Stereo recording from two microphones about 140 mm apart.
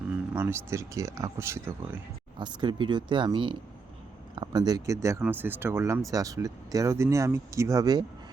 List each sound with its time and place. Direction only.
0.3 s speech: 15° right (ahead or behind)
2.4 s speech: 35° right (ahead or behind)